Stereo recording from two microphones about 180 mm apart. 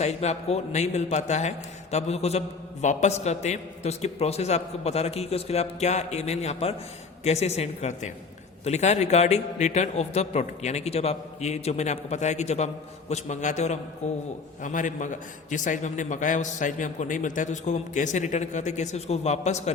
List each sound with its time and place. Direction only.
0.0 s a man's voice: 35° left (ahead or behind)